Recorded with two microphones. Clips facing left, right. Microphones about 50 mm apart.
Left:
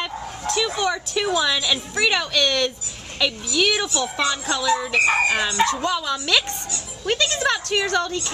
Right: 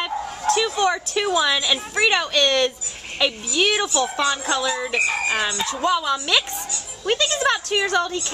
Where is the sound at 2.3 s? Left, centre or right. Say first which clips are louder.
Right 2 dB; right.